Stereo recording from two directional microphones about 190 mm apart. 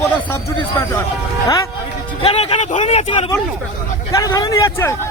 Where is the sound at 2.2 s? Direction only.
30° left (ahead or behind).